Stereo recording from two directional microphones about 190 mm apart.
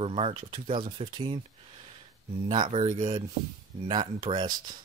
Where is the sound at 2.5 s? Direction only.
25° right (ahead or behind).